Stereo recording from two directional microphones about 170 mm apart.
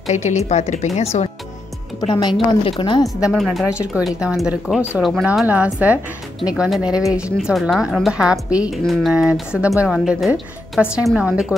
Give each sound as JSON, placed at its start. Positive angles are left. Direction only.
{"t": 0.0, "sound": "speech", "side_deg": 45}
{"t": 2.0, "sound": "a woman's voice", "side_deg": 25}
{"t": 3.2, "sound": "a woman's voice", "side_deg": -5}